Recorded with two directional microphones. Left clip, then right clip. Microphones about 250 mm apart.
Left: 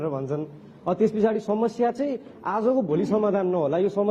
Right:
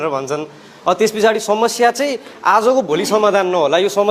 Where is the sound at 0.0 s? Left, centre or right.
Centre.